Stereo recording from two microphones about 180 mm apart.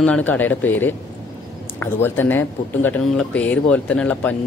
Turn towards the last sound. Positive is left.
turn(degrees=5)  # may be behind; listen again after turning